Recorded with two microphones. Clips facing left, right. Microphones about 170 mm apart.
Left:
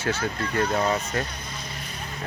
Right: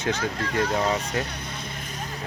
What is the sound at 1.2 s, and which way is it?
Vehicle, 65° right (ahead or behind).